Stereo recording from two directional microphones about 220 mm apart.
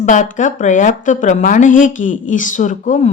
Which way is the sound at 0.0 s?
35° left (ahead or behind).